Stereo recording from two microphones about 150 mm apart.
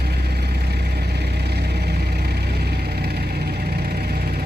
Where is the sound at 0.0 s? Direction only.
90° right.